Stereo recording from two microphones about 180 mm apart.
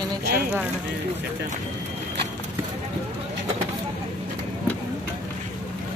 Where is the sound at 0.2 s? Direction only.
60° right (ahead or behind).